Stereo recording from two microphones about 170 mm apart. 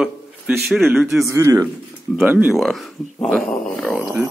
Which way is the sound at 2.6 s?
Centre (ahead or behind).